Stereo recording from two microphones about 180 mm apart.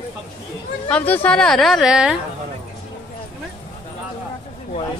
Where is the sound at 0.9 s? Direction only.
10° left (ahead or behind).